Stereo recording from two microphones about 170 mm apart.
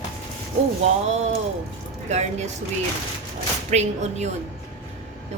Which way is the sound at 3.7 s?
40° right (ahead or behind).